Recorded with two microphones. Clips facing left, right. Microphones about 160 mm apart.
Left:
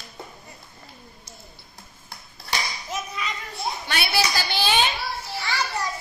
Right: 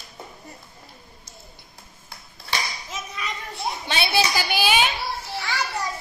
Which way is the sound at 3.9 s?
25° right (ahead or behind).